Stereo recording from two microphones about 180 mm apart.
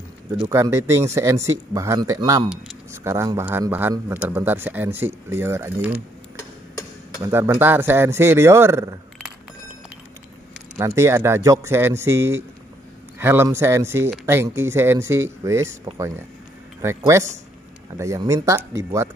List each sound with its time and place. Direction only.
0.4 s speech: 15° right (ahead or behind)
7.2 s speech: 15° right (ahead or behind)
11.0 s speech: 15° right (ahead or behind)